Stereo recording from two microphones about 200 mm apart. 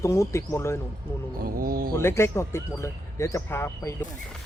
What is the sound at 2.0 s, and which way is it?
Speech, 15° left (ahead or behind).